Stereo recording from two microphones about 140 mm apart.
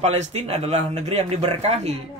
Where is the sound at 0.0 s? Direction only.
50° right (ahead or behind).